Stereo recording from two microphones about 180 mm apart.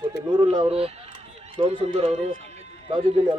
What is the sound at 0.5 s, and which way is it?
Speech, 35° right (ahead or behind).